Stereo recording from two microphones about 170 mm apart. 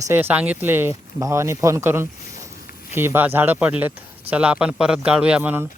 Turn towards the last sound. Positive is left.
turn(degrees=-10)  # may be behind; listen again after turning